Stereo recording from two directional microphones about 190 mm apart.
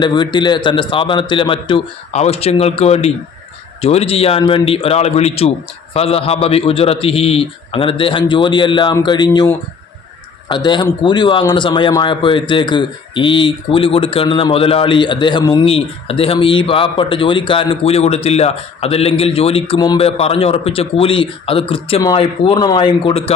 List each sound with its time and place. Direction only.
0.0 s a man's voice: 25° left (ahead or behind)
10.5 s speech: 25° left (ahead or behind)